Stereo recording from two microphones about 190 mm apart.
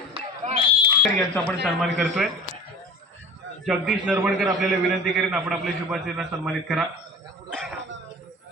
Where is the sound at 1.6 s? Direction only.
5° right (ahead or behind).